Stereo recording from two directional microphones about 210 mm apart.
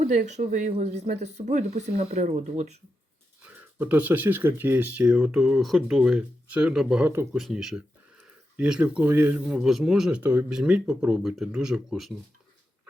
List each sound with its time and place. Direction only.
0.0 s speech: 35° right (ahead or behind)
3.4 s speech: 10° right (ahead or behind)